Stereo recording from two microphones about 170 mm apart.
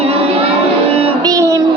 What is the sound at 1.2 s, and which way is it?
Music, 20° right (ahead or behind).